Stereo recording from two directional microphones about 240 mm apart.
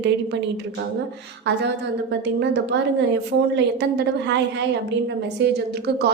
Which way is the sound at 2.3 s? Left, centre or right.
Right.